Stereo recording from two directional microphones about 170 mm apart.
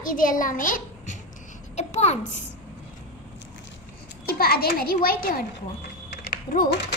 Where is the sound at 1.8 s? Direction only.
40° left (ahead or behind).